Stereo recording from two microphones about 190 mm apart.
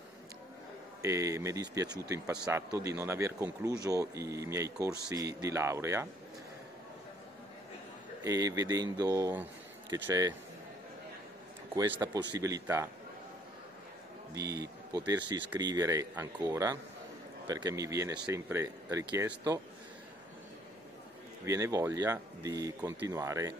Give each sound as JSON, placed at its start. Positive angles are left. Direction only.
{"t": 1.0, "sound": "a man's voice", "side_deg": -15}
{"t": 8.2, "sound": "a man's voice", "side_deg": -20}
{"t": 11.7, "sound": "a man's voice", "side_deg": -20}
{"t": 14.3, "sound": "a man's voice", "side_deg": -15}
{"t": 21.5, "sound": "a man's voice", "side_deg": -15}